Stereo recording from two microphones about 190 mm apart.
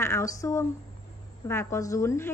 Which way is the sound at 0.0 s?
15° left (ahead or behind).